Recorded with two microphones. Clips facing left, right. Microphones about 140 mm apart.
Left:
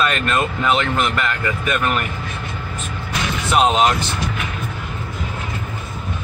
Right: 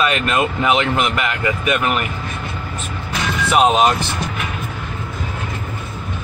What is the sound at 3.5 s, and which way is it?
Speech, 5° right (ahead or behind).